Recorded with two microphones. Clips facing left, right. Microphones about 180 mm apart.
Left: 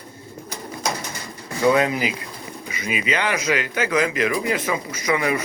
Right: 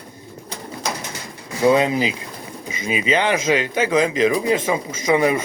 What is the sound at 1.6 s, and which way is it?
Speech, 25° right (ahead or behind).